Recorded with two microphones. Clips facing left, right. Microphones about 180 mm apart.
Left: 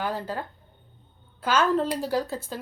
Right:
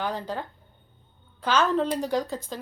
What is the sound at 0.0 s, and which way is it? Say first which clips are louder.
A woman's voice: even; 5° left (ahead or behind).